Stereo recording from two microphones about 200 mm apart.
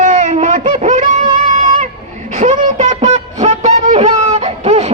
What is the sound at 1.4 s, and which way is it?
Music, 40° right (ahead or behind).